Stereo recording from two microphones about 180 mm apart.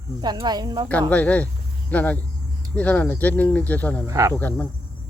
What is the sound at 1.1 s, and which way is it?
Speech, 10° left (ahead or behind).